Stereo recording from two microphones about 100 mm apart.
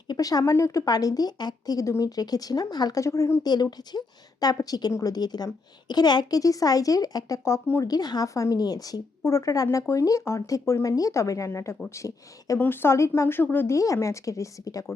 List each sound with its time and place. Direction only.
0.1 s speech: 40° left (ahead or behind)
3.0 s speech: 30° left (ahead or behind)
3.4 s speech: 45° left (ahead or behind); by 7.9 s 30° left (ahead or behind)
7.9 s speech: 40° left (ahead or behind)
12.5 s speech: 20° left (ahead or behind)
13.7 s speech: 30° left (ahead or behind)